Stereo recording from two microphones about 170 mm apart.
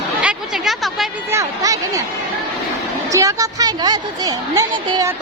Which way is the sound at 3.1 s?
20° right (ahead or behind).